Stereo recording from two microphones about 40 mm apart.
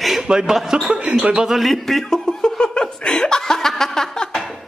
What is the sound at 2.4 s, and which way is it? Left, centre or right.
Laughter, left.